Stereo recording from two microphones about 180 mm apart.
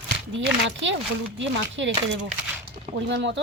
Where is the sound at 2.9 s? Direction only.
80° right.